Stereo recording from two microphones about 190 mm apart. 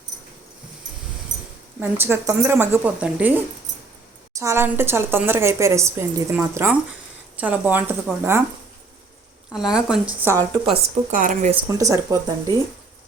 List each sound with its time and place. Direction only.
1.8 s a woman's voice: 10° right (ahead or behind)
9.5 s a woman's voice: 5° right (ahead or behind)
11.1 s speech: 40° right (ahead or behind)
11.7 s a woman's voice: 15° right (ahead or behind)